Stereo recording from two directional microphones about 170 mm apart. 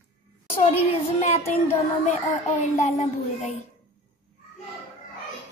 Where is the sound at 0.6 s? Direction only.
40° left (ahead or behind).